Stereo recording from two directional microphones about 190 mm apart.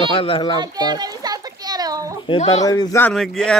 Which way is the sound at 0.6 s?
20° right (ahead or behind).